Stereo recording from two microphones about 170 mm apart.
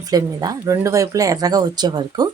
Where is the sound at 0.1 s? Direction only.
20° right (ahead or behind).